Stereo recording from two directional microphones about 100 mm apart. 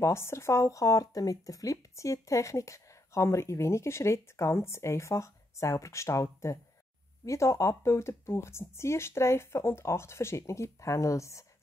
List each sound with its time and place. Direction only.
0.0 s speech: 25° left (ahead or behind)